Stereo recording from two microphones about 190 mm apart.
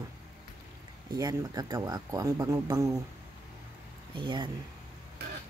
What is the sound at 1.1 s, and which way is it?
Speech, 20° right (ahead or behind).